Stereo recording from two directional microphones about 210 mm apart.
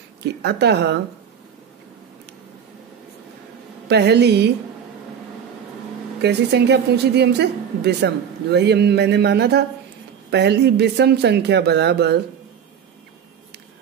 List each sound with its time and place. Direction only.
0.2 s a woman's voice: 55° right (ahead or behind)
3.8 s a woman's voice: 50° right (ahead or behind)
6.2 s a woman's voice: 55° right (ahead or behind)